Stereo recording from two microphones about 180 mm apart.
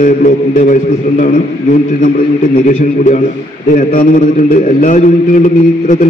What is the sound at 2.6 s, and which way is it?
A man's voice, 45° left (ahead or behind).